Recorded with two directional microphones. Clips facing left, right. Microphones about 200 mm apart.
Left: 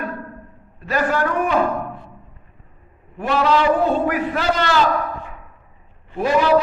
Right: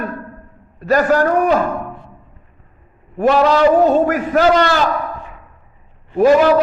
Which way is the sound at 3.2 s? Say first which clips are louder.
Right 6 dB; 40° right (ahead or behind).